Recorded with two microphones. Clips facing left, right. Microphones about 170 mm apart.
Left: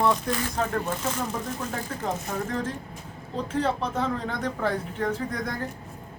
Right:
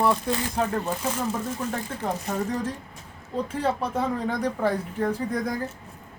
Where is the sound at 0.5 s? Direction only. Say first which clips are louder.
Right 1 dB; 5° right (ahead or behind).